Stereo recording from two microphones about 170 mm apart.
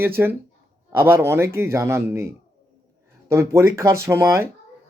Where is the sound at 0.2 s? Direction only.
10° right (ahead or behind).